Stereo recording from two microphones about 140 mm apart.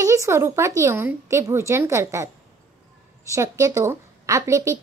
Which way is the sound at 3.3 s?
25° right (ahead or behind).